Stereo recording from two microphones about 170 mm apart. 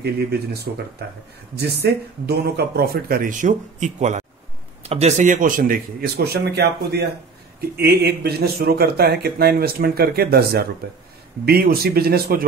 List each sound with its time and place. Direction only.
0.0 s speech: 70° right (ahead or behind)
1.6 s speech: 70° right (ahead or behind); by 6.0 s 55° right (ahead or behind)
6.1 s speech: 70° right (ahead or behind)